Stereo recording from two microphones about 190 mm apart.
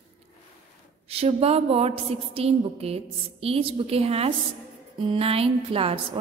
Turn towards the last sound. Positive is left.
turn(degrees=-30)  # may be behind; listen again after turning